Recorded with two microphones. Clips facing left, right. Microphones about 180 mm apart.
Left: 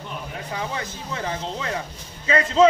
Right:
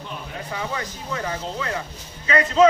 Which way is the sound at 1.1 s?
25° left (ahead or behind).